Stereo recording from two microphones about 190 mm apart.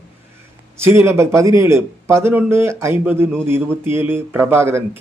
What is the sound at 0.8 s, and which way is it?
A man's voice, 15° right (ahead or behind).